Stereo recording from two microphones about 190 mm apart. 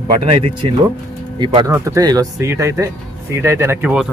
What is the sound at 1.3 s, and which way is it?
Speech, 25° right (ahead or behind).